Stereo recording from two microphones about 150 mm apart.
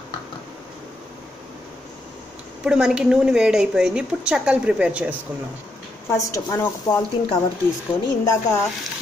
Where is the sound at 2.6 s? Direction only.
5° right (ahead or behind).